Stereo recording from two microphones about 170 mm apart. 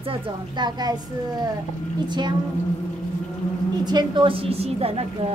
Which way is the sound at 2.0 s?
25° right (ahead or behind).